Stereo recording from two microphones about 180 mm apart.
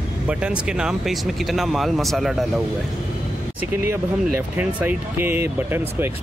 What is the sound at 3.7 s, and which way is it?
Speech, 10° right (ahead or behind).